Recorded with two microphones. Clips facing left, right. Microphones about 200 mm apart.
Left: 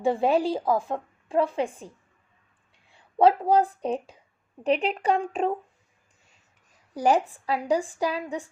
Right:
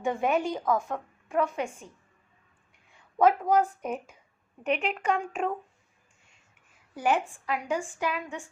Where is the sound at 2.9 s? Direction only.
30° left (ahead or behind).